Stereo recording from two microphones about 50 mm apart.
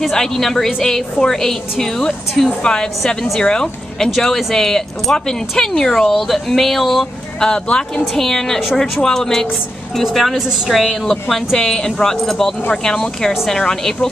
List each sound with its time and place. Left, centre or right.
0.0 s a woman's voice: centre